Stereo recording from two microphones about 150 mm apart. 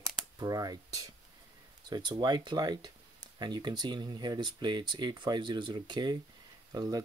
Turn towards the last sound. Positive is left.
turn(degrees=-25)  # may be behind; listen again after turning